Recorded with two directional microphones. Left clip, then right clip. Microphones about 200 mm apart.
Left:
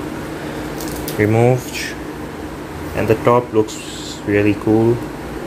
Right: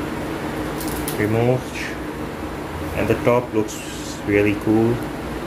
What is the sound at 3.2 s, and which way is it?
Speech, 35° left (ahead or behind).